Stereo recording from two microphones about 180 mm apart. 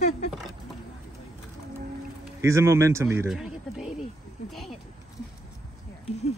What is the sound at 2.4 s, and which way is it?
Speech, 15° right (ahead or behind).